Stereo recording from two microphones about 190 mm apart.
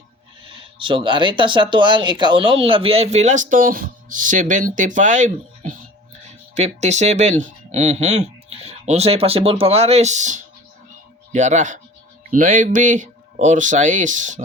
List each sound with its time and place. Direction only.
0.6 s speech: 25° right (ahead or behind)